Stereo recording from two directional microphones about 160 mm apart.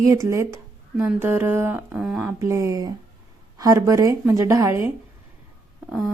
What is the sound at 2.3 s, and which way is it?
Speech, 20° right (ahead or behind).